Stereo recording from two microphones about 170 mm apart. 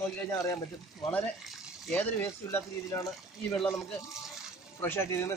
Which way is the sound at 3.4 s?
Centre (ahead or behind).